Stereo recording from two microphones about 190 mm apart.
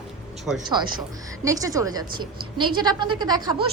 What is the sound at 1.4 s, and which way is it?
A woman's voice, 20° right (ahead or behind).